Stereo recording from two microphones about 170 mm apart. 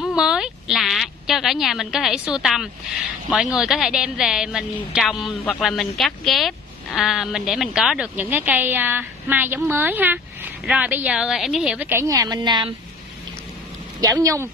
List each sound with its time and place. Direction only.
0.0 s a sound: 5° right (ahead or behind)
3.3 s a woman's voice: 5° right (ahead or behind); by 12.7 s 25° right (ahead or behind)
14.0 s speech: 20° right (ahead or behind)